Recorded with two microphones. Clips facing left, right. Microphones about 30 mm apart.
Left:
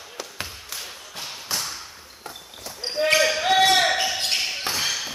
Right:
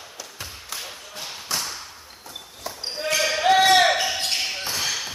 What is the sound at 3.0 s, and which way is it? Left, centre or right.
Basketball bounce, left.